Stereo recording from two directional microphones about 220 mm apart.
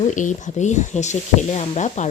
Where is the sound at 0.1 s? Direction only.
35° left (ahead or behind).